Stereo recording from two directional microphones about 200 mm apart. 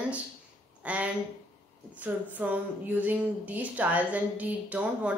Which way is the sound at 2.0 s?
5° right (ahead or behind).